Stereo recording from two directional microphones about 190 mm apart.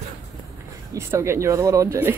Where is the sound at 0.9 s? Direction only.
15° right (ahead or behind).